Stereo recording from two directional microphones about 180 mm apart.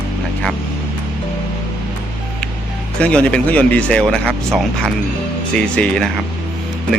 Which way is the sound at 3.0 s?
5° left (ahead or behind).